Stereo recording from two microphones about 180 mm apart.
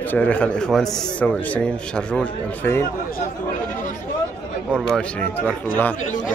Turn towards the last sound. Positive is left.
turn(degrees=10)  # may be behind; listen again after turning